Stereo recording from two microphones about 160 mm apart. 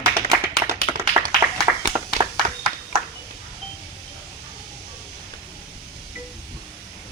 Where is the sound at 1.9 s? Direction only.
20° right (ahead or behind).